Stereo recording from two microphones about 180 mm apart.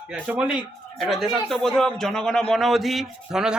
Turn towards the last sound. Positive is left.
turn(degrees=0)  # may be behind; listen again after turning